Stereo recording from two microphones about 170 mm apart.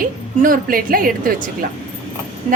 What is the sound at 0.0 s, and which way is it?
A woman's voice, 55° right (ahead or behind).